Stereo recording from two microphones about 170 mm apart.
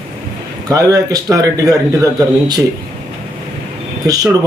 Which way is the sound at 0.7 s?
20° right (ahead or behind).